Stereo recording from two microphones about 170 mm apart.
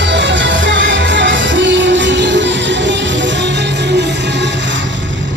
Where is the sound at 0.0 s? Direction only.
90° right.